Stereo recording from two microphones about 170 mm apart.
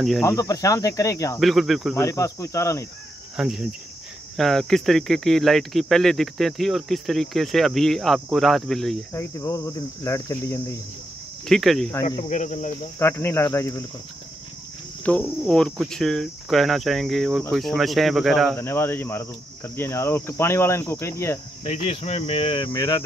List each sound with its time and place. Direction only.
0.2 s speech: 20° left (ahead or behind)
1.4 s speech: centre (ahead or behind)
2.0 s cricket: 20° left (ahead or behind)
3.3 s speech: 5° right (ahead or behind)
9.1 s cricket: 20° left (ahead or behind)
11.4 s speech: centre (ahead or behind)
11.9 s speech: 20° left (ahead or behind)
12.2 s speech: 45° left (ahead or behind)
13.0 s cricket: 15° left (ahead or behind)
15.0 s speech: 5° left (ahead or behind)
18.6 s cricket: 15° left (ahead or behind)
21.6 s speech: 35° left (ahead or behind)
22.8 s speech: 20° left (ahead or behind)